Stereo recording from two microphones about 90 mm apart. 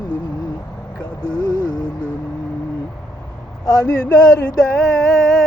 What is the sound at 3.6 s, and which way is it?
Speech, 45° left (ahead or behind).